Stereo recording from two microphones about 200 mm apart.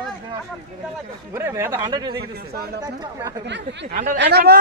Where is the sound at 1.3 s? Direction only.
15° right (ahead or behind).